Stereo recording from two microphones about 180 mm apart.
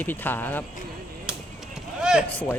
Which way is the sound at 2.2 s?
10° left (ahead or behind).